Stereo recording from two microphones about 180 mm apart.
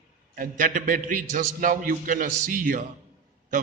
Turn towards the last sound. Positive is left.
turn(degrees=-45)  # may be behind; listen again after turning